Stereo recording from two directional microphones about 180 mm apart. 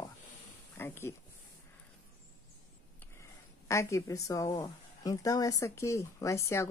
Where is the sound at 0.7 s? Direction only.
15° left (ahead or behind).